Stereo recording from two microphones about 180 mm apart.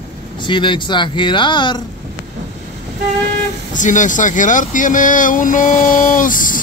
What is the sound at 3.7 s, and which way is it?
Speech, 45° left (ahead or behind).